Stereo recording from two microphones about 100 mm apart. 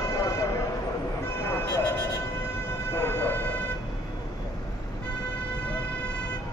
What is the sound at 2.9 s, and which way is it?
Train, 20° left (ahead or behind).